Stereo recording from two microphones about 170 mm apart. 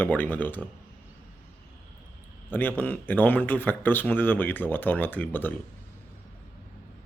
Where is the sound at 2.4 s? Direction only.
10° left (ahead or behind).